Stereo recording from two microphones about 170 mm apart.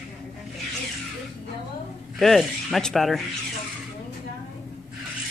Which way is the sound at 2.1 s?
Centre (ahead or behind).